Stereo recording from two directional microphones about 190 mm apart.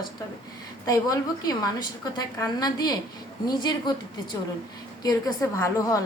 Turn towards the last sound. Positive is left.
turn(degrees=15)  # may be behind; listen again after turning